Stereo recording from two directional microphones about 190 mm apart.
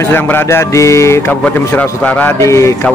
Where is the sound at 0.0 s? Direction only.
10° left (ahead or behind).